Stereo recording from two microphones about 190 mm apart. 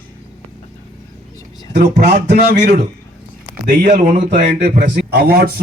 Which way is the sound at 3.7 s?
45° right (ahead or behind).